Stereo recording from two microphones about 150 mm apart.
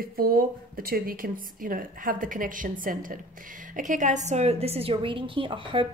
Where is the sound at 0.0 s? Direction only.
80° right.